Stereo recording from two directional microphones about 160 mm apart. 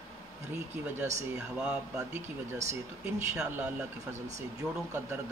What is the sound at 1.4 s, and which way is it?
Speech, 5° right (ahead or behind).